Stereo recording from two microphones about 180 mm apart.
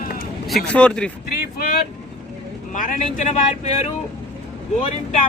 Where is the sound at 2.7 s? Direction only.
45° left (ahead or behind).